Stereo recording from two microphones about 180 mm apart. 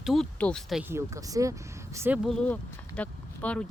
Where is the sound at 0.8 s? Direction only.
15° right (ahead or behind).